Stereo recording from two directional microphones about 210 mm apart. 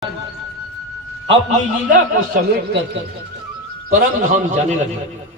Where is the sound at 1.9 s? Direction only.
40° right (ahead or behind).